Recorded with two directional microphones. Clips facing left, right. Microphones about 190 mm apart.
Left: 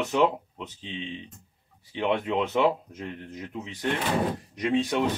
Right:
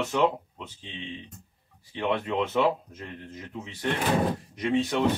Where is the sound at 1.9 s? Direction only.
20° left (ahead or behind).